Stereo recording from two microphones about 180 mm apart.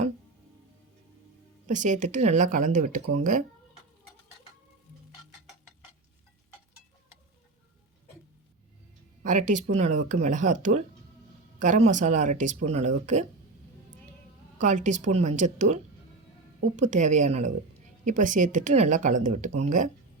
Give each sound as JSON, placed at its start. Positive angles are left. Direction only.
{"t": 1.6, "sound": "speech", "side_deg": -45}
{"t": 9.2, "sound": "speech", "side_deg": -45}
{"t": 14.6, "sound": "speech", "side_deg": -45}